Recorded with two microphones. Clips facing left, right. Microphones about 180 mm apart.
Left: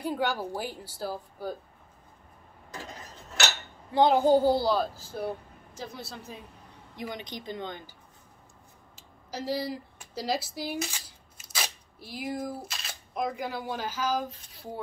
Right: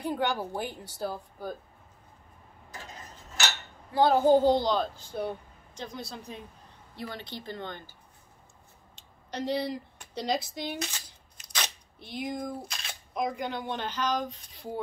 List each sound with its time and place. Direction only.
0.0 s a woman's voice: 5° left (ahead or behind)
3.9 s a woman's voice: 15° left (ahead or behind)
7.0 s a woman's voice: 15° left (ahead or behind)
8.9 s speech: 5° left (ahead or behind)